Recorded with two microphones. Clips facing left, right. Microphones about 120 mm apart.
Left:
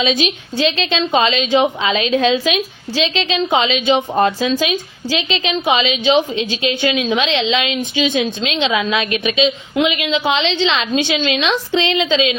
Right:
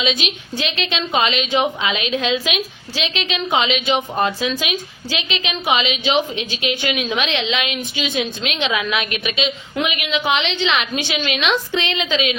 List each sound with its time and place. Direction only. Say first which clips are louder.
0.0 s a woman's voice: left 5 dB; 35° left (ahead or behind)